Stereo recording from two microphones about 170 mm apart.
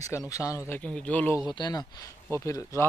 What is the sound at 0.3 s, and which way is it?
Speech, 20° left (ahead or behind).